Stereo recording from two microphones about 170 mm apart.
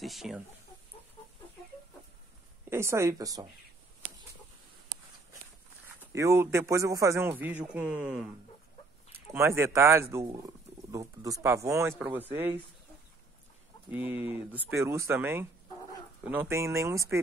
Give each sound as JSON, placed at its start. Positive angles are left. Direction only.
{"t": 0.0, "sound": "speech", "side_deg": 0}
{"t": 2.7, "sound": "speech", "side_deg": -15}
{"t": 5.9, "sound": "speech", "side_deg": -15}
{"t": 9.3, "sound": "speech", "side_deg": -15}
{"t": 13.8, "sound": "speech", "side_deg": -10}